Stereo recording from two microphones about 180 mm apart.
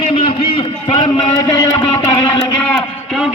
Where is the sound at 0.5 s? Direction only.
30° left (ahead or behind).